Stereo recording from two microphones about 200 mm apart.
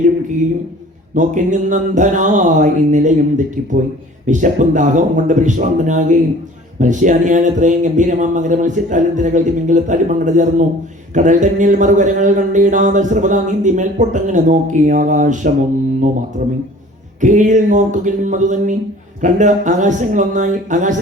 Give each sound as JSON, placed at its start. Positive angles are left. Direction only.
{"t": 1.1, "sound": "speech", "side_deg": -40}
{"t": 17.2, "sound": "speech", "side_deg": -40}